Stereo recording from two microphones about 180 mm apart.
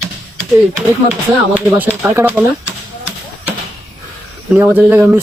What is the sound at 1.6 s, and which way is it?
Speech, 10° right (ahead or behind).